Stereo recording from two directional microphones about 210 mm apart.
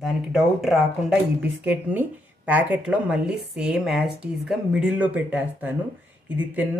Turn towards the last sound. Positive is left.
turn(degrees=-5)  # may be behind; listen again after turning